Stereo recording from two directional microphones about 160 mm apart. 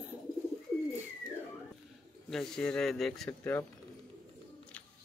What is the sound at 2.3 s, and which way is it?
Speech, 5° left (ahead or behind).